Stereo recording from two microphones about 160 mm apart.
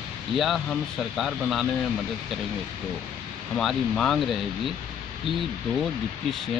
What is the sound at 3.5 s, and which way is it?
Speech, 5° left (ahead or behind).